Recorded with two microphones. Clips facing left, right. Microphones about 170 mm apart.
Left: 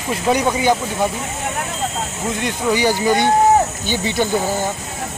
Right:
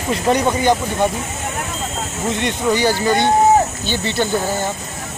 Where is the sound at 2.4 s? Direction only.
10° left (ahead or behind).